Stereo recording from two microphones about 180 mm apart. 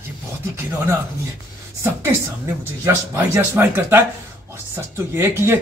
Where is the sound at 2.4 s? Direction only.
15° right (ahead or behind).